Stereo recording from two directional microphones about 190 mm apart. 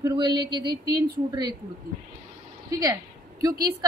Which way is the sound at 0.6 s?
55° right (ahead or behind).